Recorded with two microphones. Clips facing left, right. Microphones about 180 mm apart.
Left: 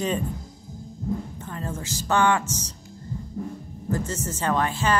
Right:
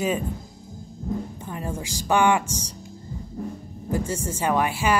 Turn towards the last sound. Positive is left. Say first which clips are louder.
# right 1 dB
turn(degrees=-10)  # may be behind; listen again after turning